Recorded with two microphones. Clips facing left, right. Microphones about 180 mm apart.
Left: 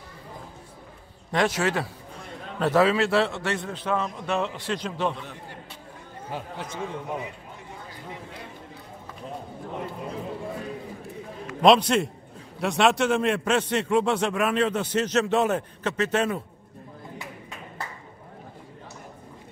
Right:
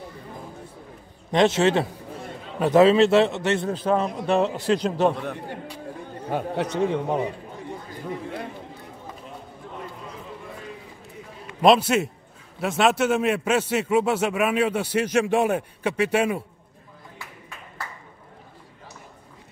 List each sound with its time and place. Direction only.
1.3 s a man's voice: 25° right (ahead or behind)
3.6 s a man's voice: 35° right (ahead or behind)
5.1 s a man's voice: 60° right (ahead or behind); by 7.2 s 75° right (ahead or behind)
11.6 s a man's voice: 5° right (ahead or behind)
17.2 s a sound: 20° left (ahead or behind)